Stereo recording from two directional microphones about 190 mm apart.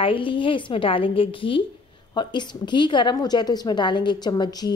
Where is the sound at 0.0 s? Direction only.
25° left (ahead or behind).